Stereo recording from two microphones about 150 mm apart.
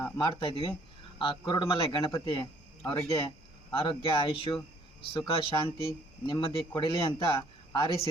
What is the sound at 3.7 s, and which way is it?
Speech, 35° left (ahead or behind).